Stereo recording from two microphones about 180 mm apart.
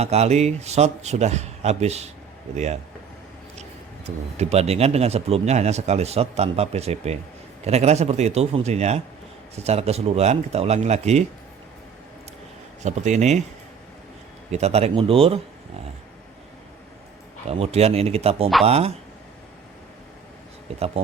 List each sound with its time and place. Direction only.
0.0 s speech: 35° right (ahead or behind)
4.4 s speech: 35° right (ahead or behind)
12.8 s speech: 40° right (ahead or behind)
14.5 s speech: 35° right (ahead or behind)
17.5 s speech: 35° right (ahead or behind)